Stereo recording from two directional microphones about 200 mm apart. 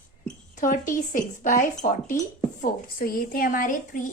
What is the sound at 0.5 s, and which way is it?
A woman's voice, 40° left (ahead or behind).